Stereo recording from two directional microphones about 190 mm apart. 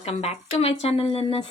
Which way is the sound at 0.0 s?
30° left (ahead or behind).